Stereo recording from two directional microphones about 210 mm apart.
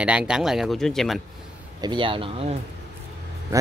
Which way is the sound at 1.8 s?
20° right (ahead or behind).